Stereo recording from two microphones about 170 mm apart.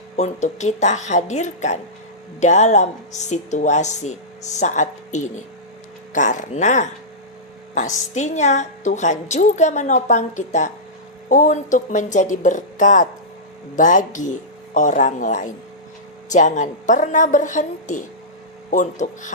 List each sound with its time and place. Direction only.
0.2 s a woman's voice: 45° left (ahead or behind)